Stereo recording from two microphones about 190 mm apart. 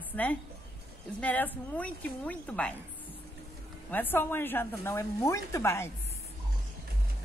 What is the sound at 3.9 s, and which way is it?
A woman's voice, 10° left (ahead or behind).